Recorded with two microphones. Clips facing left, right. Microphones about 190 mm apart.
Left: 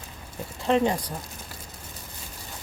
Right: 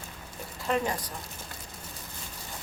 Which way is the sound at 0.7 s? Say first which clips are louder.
Left 6 dB; 25° left (ahead or behind).